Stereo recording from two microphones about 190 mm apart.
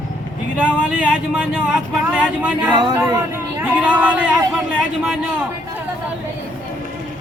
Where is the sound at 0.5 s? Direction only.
5° right (ahead or behind).